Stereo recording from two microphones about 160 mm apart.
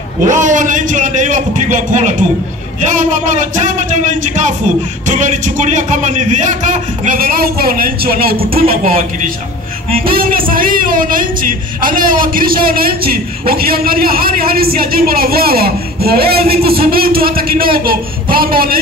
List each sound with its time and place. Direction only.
0.2 s a man's voice: 50° right (ahead or behind)
10.0 s a woman's voice: 65° right (ahead or behind)